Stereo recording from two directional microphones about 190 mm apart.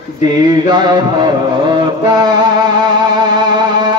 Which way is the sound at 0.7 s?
20° right (ahead or behind).